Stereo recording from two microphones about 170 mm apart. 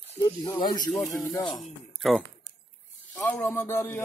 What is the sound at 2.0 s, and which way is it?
Speech, centre (ahead or behind).